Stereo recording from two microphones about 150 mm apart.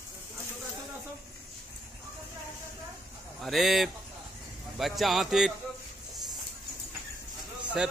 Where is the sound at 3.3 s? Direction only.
Centre (ahead or behind).